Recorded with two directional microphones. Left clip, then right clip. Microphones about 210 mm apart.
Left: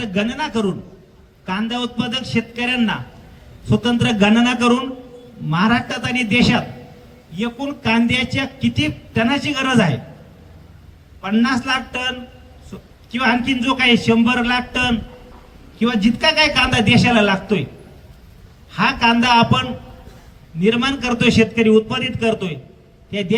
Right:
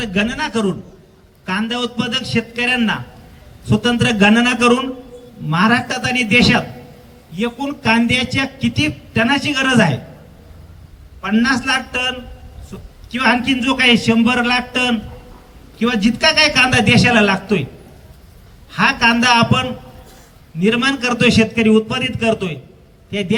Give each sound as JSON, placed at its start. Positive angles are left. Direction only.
{"t": 0.0, "sound": "speech", "side_deg": -25}
{"t": 11.2, "sound": "speech", "side_deg": -20}
{"t": 18.7, "sound": "speech", "side_deg": -20}